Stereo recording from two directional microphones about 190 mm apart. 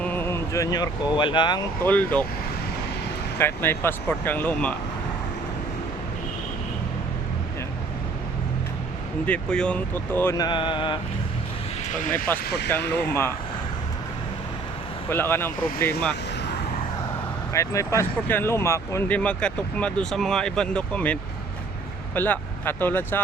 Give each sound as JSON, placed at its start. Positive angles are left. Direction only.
{"t": 0.0, "sound": "speech", "side_deg": 10}
{"t": 1.8, "sound": "speech", "side_deg": 10}
{"t": 3.3, "sound": "speech", "side_deg": 10}
{"t": 9.2, "sound": "speech", "side_deg": 5}
{"t": 11.9, "sound": "speech", "side_deg": 45}
{"t": 12.5, "sound": "speech", "side_deg": 60}
{"t": 15.1, "sound": "speech", "side_deg": 10}
{"t": 17.5, "sound": "speech", "side_deg": 15}